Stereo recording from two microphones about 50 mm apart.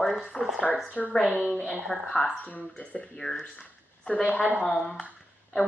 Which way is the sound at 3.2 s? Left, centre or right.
Centre.